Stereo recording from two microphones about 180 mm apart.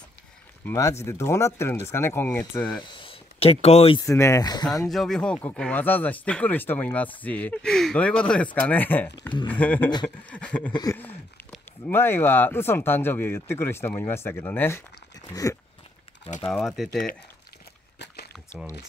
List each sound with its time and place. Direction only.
0.7 s speech: 15° left (ahead or behind)
2.8 s speech: 25° left (ahead or behind)
4.0 s speech: 15° left (ahead or behind)
4.8 s speech: centre (ahead or behind)
10.7 s a sound: 20° left (ahead or behind)
11.8 s speech: 15° left (ahead or behind)
15.5 s a sound: 20° left (ahead or behind)
16.4 s speech: centre (ahead or behind)
17.9 s a sound: 65° left (ahead or behind)